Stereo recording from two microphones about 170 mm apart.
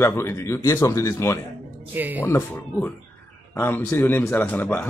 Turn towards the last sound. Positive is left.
turn(degrees=10)  # may be behind; listen again after turning